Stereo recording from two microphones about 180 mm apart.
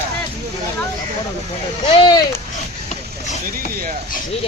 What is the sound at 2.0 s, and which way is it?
Speech, 25° left (ahead or behind).